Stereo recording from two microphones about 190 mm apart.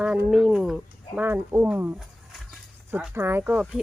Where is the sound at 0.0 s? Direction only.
5° right (ahead or behind).